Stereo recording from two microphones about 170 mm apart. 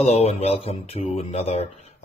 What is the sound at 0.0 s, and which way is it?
Speech, 35° left (ahead or behind).